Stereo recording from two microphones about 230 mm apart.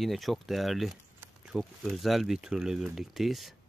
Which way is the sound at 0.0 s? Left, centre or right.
Centre.